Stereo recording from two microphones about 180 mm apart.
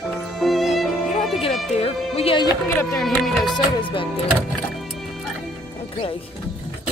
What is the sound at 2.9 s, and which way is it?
Speech, centre (ahead or behind).